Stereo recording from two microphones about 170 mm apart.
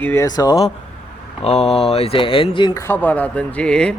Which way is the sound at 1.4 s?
40° left (ahead or behind).